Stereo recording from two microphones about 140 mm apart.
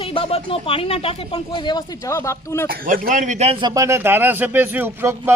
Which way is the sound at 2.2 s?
20° left (ahead or behind).